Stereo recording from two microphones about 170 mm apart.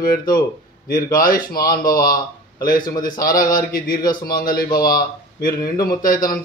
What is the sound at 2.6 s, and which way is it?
Speech, 55° left (ahead or behind).